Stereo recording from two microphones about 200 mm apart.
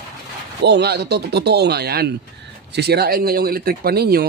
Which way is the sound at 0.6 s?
55° right (ahead or behind).